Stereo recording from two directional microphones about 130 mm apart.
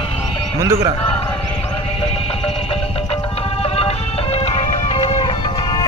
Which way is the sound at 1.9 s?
45° left (ahead or behind).